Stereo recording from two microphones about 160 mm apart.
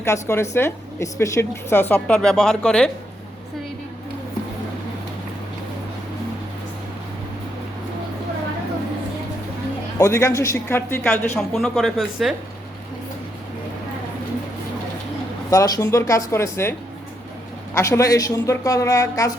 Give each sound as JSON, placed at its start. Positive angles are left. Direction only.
{"t": 0.0, "sound": "a woman's voice", "side_deg": 15}
{"t": 10.0, "sound": "a woman's voice", "side_deg": 15}
{"t": 15.4, "sound": "a woman's voice", "side_deg": 20}
{"t": 17.7, "sound": "a woman's voice", "side_deg": 20}